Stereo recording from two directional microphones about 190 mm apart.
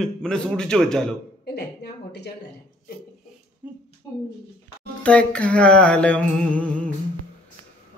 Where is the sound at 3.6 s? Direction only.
10° right (ahead or behind).